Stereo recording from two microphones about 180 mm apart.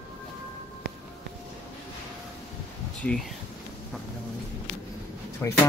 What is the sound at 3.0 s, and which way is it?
Speech, 5° left (ahead or behind).